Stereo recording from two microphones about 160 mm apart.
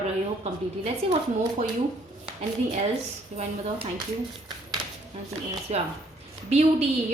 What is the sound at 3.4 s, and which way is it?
Speech, 35° right (ahead or behind).